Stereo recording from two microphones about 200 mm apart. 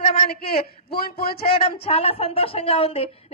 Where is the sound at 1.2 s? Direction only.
50° left (ahead or behind).